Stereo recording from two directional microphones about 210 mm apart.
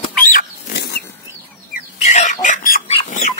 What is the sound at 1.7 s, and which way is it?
Bird, 35° left (ahead or behind).